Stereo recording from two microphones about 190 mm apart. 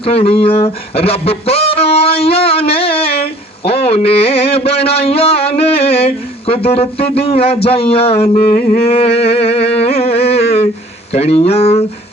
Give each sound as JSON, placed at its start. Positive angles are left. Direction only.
{"t": 0.0, "sound": "speech", "side_deg": 30}